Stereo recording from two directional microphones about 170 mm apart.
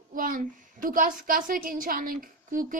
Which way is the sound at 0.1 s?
50° right (ahead or behind).